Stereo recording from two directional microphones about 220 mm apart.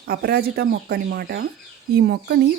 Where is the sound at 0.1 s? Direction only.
45° right (ahead or behind).